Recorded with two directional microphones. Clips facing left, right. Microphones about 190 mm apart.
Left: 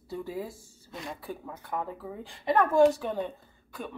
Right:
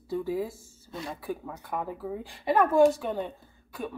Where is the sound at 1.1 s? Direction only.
5° right (ahead or behind).